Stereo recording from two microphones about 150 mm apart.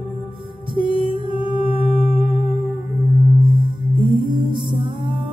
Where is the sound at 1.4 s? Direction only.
35° left (ahead or behind).